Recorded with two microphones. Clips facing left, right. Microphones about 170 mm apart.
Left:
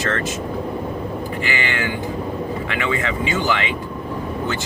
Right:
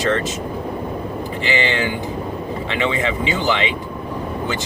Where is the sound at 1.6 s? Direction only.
20° right (ahead or behind).